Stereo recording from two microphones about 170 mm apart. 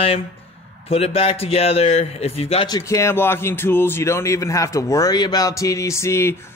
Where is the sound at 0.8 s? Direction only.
35° left (ahead or behind).